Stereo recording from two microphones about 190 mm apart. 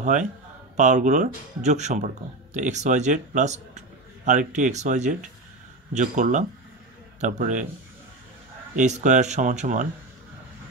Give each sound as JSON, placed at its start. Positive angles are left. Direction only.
{"t": 0.0, "sound": "a man's voice", "side_deg": -40}
{"t": 8.7, "sound": "speech", "side_deg": -40}